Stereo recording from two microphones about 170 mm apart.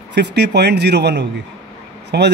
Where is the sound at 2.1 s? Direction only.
75° right (ahead or behind).